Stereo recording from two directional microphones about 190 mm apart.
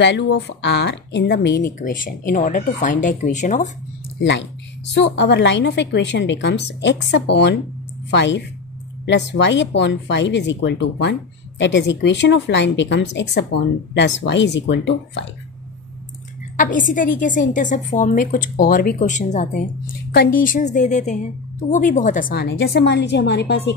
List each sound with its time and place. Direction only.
0.0 s a woman's voice: 70° left (ahead or behind)
1.8 s a woman's voice: 45° left (ahead or behind)
4.2 s a woman's voice: 75° left (ahead or behind)
16.5 s a woman's voice: 45° left (ahead or behind); by 23.6 s 60° left (ahead or behind)